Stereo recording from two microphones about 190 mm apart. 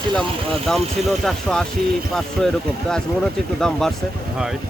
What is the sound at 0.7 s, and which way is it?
Speech, centre (ahead or behind).